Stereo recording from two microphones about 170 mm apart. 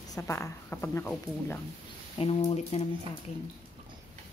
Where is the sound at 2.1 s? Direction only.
35° left (ahead or behind).